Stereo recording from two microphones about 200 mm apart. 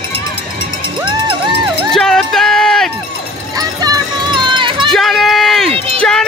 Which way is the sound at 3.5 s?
20° right (ahead or behind).